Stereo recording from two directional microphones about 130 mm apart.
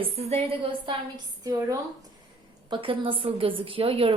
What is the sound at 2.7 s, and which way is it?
A woman's voice, 40° right (ahead or behind).